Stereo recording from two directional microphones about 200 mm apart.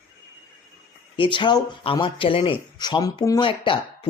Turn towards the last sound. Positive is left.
turn(degrees=25)  # may be behind; listen again after turning